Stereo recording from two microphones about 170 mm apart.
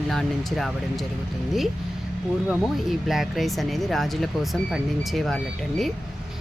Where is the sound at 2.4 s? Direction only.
Centre (ahead or behind).